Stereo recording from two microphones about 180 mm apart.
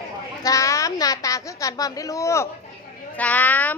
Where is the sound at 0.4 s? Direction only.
15° left (ahead or behind).